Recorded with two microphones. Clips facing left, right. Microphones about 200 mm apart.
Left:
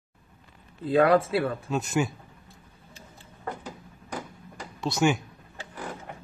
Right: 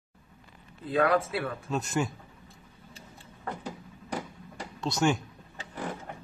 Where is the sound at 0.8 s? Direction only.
25° left (ahead or behind).